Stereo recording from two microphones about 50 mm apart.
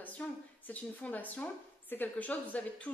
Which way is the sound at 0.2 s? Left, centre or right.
Left.